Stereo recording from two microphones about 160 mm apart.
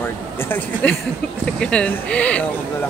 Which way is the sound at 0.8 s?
10° left (ahead or behind).